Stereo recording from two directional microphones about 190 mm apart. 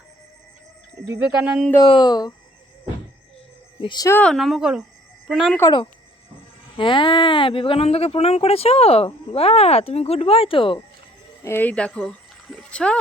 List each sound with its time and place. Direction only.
1.0 s speech: 10° right (ahead or behind)
1.8 s speech: 25° left (ahead or behind)
3.8 s speech: 25° left (ahead or behind)
4.2 s a woman's voice: centre (ahead or behind)
5.5 s speech: 20° left (ahead or behind)
11.4 s speech: 10° left (ahead or behind)